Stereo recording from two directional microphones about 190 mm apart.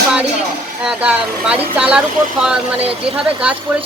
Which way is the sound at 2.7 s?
30° right (ahead or behind).